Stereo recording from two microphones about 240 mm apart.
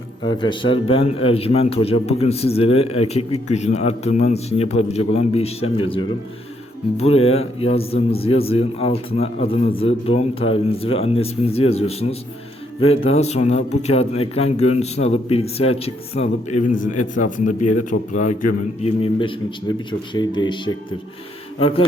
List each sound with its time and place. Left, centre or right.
0.3 s a man's voice: centre